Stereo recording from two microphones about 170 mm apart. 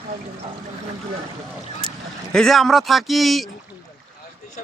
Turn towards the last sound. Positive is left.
turn(degrees=0)  # may be behind; listen again after turning